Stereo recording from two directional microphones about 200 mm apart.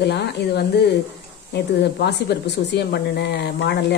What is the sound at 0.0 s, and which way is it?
Speech, 55° left (ahead or behind).